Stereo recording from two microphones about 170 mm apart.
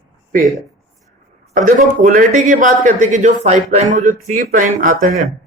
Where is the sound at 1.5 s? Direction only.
50° right (ahead or behind).